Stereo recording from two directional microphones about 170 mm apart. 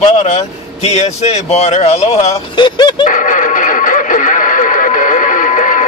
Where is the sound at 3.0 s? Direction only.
50° left (ahead or behind).